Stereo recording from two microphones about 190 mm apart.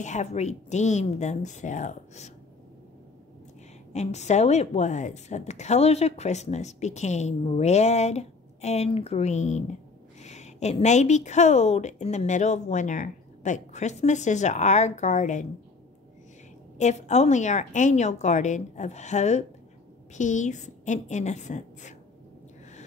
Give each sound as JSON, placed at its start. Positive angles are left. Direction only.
{"t": 0.0, "sound": "a woman's voice", "side_deg": 35}
{"t": 3.9, "sound": "a woman's voice", "side_deg": 35}
{"t": 16.7, "sound": "a woman's voice", "side_deg": 35}